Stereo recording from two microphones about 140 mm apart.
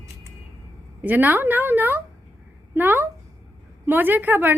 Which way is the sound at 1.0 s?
10° right (ahead or behind).